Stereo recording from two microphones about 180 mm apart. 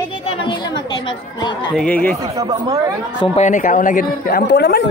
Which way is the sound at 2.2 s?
15° right (ahead or behind).